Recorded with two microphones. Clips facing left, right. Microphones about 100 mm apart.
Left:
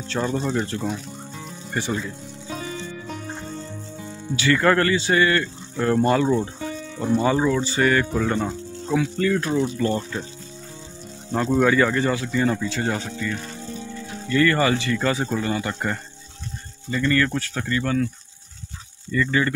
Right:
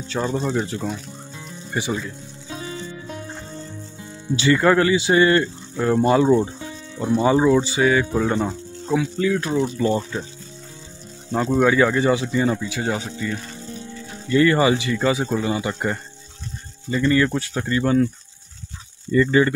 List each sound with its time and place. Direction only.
0.0 s speech: 5° right (ahead or behind)
4.6 s speech: 10° right (ahead or behind)
5.8 s speech: 10° right (ahead or behind)
11.3 s speech: 10° right (ahead or behind); by 18.0 s 25° right (ahead or behind)
19.1 s speech: 20° right (ahead or behind)